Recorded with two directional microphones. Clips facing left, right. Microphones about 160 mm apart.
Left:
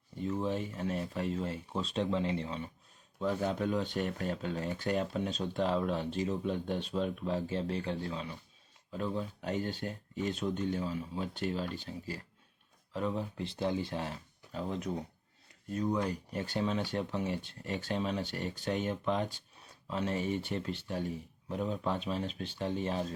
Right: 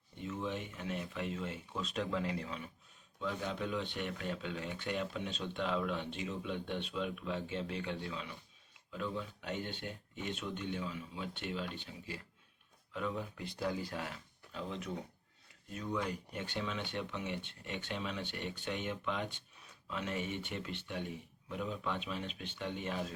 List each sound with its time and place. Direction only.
0.2 s speech: 35° left (ahead or behind)
3.2 s speech: 45° left (ahead or behind); by 14.2 s 30° left (ahead or behind)
14.5 s speech: 45° left (ahead or behind)